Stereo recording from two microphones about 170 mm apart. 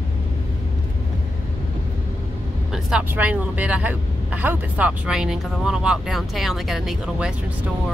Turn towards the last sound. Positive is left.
turn(degrees=-5)  # may be behind; listen again after turning